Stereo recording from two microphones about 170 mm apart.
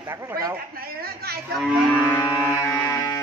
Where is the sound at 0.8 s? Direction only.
65° right (ahead or behind).